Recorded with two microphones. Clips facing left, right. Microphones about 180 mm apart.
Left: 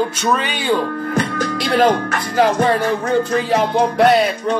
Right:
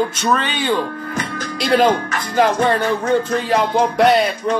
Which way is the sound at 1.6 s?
Centre (ahead or behind).